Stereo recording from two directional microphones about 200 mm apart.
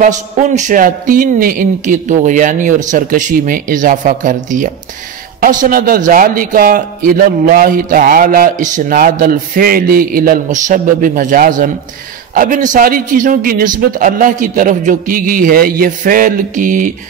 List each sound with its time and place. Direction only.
0.0 s a man's voice: 40° right (ahead or behind)